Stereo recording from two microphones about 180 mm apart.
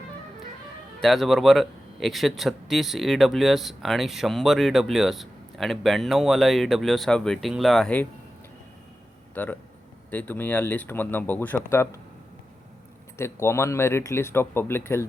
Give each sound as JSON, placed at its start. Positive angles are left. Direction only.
{"t": 1.0, "sound": "speech", "side_deg": 0}
{"t": 9.3, "sound": "speech", "side_deg": 10}
{"t": 13.1, "sound": "speech", "side_deg": 15}